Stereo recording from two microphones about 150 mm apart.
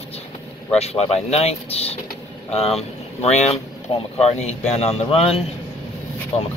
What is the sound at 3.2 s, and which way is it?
A man's voice, 45° left (ahead or behind).